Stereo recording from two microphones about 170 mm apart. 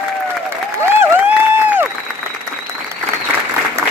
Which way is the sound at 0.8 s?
10° right (ahead or behind).